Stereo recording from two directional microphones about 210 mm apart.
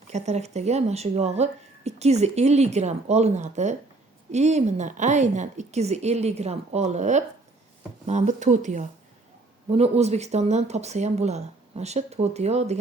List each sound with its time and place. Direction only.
0.1 s speech: 30° right (ahead or behind)